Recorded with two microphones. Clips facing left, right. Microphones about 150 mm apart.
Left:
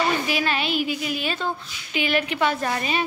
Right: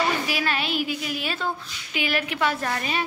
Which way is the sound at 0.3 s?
Centre (ahead or behind).